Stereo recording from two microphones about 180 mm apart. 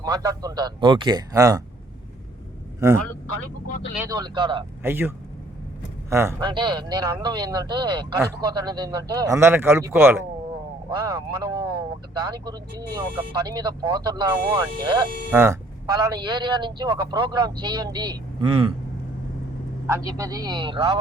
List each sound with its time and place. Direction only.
0.0 s speech: 20° right (ahead or behind)
4.1 s speech: 25° right (ahead or behind)
4.8 s a man's voice: 10° right (ahead or behind)
6.5 s speech: 25° right (ahead or behind)
15.3 s speech: 15° right (ahead or behind); by 18.7 s 30° right (ahead or behind)
19.9 s speech: 20° right (ahead or behind)